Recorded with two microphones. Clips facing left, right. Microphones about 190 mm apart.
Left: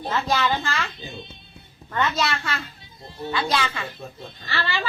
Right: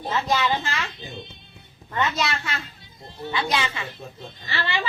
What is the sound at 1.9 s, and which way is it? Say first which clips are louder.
A woman's voice: left 1 dB; 15° right (ahead or behind).